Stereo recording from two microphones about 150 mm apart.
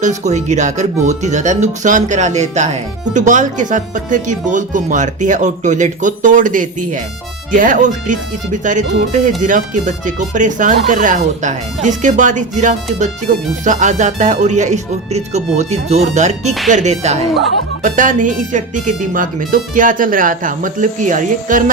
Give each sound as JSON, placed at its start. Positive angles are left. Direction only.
{"t": 0.0, "sound": "speech", "side_deg": -50}